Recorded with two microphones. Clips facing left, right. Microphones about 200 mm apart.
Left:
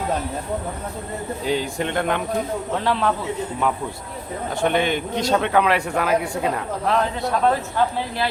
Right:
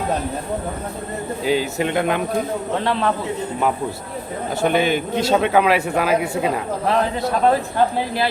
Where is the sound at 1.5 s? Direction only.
5° right (ahead or behind).